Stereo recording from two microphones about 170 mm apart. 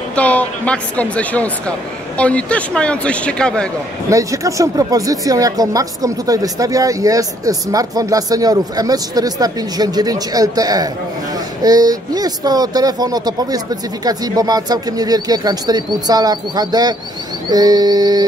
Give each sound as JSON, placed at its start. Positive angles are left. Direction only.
{"t": 0.1, "sound": "a man's voice", "side_deg": 10}
{"t": 4.1, "sound": "speech", "side_deg": -20}